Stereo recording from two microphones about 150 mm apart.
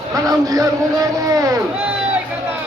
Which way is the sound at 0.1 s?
25° right (ahead or behind).